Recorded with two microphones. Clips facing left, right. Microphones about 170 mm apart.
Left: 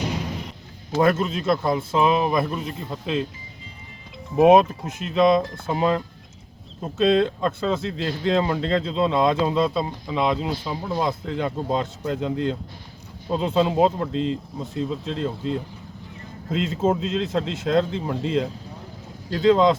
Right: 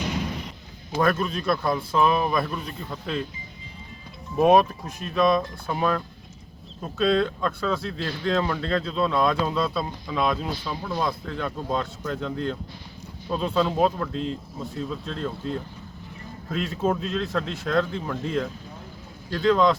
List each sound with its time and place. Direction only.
0.9 s speech: 25° left (ahead or behind)
4.4 s speech: 20° left (ahead or behind)